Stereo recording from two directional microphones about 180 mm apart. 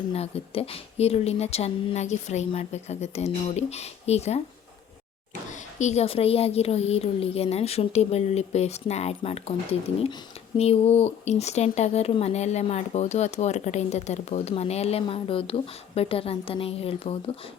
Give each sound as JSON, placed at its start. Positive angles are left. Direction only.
{"t": 0.1, "sound": "speech", "side_deg": 35}
{"t": 5.5, "sound": "speech", "side_deg": 40}